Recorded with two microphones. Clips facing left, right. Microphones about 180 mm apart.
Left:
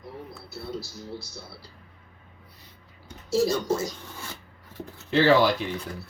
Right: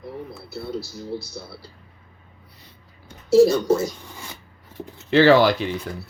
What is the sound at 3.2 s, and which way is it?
Speech, 65° right (ahead or behind).